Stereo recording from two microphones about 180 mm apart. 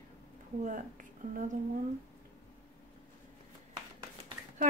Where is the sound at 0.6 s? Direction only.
45° right (ahead or behind).